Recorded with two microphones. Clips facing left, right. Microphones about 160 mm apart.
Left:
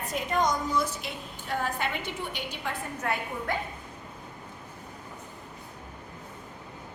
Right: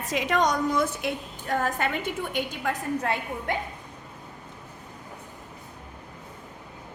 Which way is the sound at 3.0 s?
25° right (ahead or behind).